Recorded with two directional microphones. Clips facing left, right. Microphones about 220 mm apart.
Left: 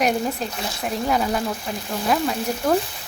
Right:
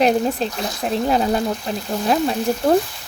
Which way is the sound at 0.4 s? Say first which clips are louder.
Right 4 dB; 30° right (ahead or behind).